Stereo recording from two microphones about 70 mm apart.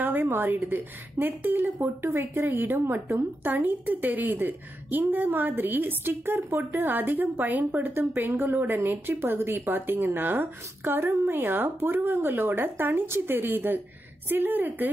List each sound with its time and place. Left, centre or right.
0.0 s a woman's voice: right